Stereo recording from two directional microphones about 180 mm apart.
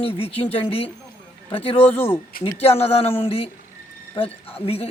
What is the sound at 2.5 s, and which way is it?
A man's voice, 35° left (ahead or behind).